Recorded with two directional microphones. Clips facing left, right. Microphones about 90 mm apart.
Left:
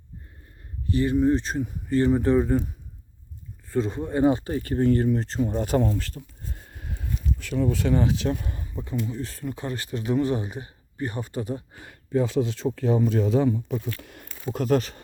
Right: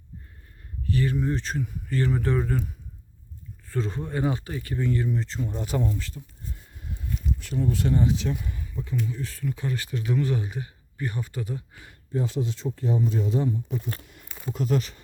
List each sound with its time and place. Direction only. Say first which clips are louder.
0.9 s speech: left 5 dB; 20° left (ahead or behind)
3.7 s speech: left 4 dB; 15° left (ahead or behind)
4.2 s speech: left 8 dB; 30° left (ahead or behind); by 5.9 s 50° left (ahead or behind)
6.0 s a sound: left 3 dB; 60° left (ahead or behind); by 7.1 s 85° left
7.3 s speech: left 3 dB; 90° left
8.2 s speech: left 3 dB; 45° left (ahead or behind)
8.7 s speech: left 1 dB; 30° left (ahead or behind)
11.9 s speech: left 5 dB; 90° left
14.0 s a sound: left 6 dB; 65° left (ahead or behind)
14.5 s speech: left 4 dB; 50° left (ahead or behind)